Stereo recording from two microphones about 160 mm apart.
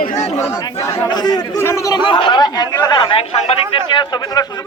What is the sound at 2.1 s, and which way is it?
A man's voice, 30° left (ahead or behind).